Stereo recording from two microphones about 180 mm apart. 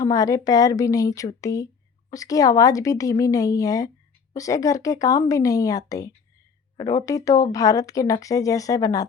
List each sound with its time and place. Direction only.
0.0 s a woman's voice: 20° left (ahead or behind)